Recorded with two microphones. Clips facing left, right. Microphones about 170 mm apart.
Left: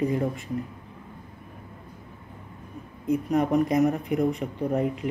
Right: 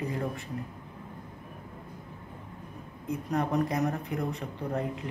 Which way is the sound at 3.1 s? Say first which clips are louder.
Left 7 dB; 15° left (ahead or behind).